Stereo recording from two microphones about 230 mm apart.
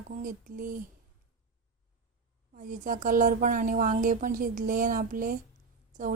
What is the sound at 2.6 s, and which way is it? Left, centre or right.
A woman's voice, right.